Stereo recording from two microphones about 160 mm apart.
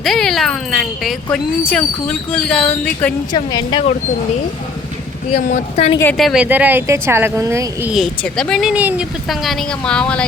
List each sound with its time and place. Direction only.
0.0 s speech: centre (ahead or behind)
3.3 s speech: 30° left (ahead or behind)
5.4 s speech: 55° left (ahead or behind)
6.1 s speech: centre (ahead or behind)
8.2 s speech: 5° left (ahead or behind)